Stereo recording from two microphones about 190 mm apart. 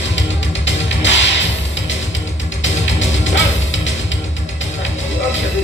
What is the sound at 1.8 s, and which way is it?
Music, 80° left.